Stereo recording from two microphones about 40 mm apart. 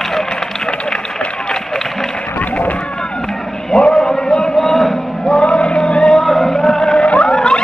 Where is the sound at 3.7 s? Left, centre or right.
Centre.